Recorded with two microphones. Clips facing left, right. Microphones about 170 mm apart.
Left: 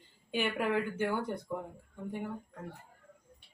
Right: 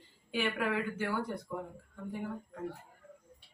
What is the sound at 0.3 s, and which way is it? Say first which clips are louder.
A man's voice: left 1 dB; 20° left (ahead or behind).